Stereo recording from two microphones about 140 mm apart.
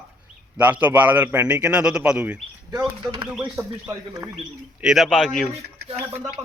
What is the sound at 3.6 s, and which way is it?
Speech, 20° right (ahead or behind).